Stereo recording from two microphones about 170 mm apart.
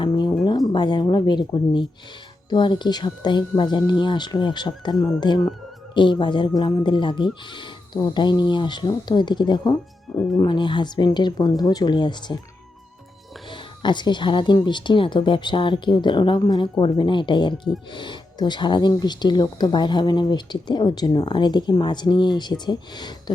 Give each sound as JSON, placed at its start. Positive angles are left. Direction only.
{"t": 0.4, "sound": "speech", "side_deg": 25}
{"t": 13.5, "sound": "speech", "side_deg": 25}